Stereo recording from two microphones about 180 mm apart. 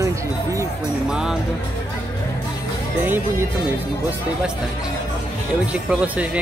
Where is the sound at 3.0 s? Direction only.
10° right (ahead or behind).